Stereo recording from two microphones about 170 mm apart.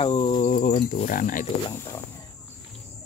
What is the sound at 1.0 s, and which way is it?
Speech, 50° left (ahead or behind).